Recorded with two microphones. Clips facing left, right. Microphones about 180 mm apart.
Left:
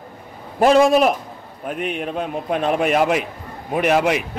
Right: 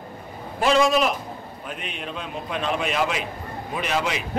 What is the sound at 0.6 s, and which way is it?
A man's voice, 50° left (ahead or behind).